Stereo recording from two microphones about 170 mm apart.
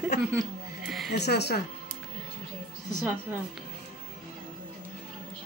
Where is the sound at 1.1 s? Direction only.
75° left (ahead or behind).